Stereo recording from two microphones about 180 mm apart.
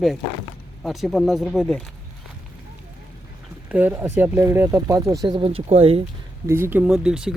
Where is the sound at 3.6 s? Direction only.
10° right (ahead or behind); by 6.0 s 35° right (ahead or behind).